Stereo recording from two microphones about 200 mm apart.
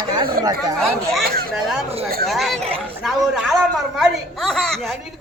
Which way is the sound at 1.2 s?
50° right (ahead or behind).